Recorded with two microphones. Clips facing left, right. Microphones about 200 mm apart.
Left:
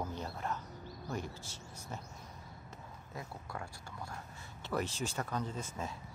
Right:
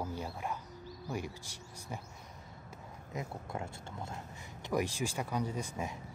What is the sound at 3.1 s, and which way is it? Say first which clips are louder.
Speech: right 5 dB; 20° right (ahead or behind).